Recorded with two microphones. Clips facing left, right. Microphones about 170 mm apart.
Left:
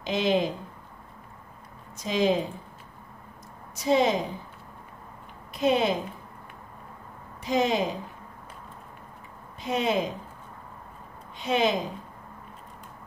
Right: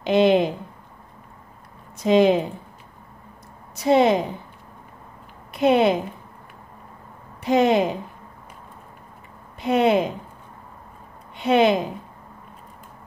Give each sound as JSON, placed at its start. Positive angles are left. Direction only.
{"t": 0.0, "sound": "a woman's voice", "side_deg": -60}
{"t": 2.0, "sound": "a woman's voice", "side_deg": -60}
{"t": 3.7, "sound": "a woman's voice", "side_deg": -65}
{"t": 5.5, "sound": "a woman's voice", "side_deg": -65}
{"t": 7.4, "sound": "a woman's voice", "side_deg": -60}
{"t": 9.6, "sound": "a woman's voice", "side_deg": -65}
{"t": 11.3, "sound": "a woman's voice", "side_deg": -65}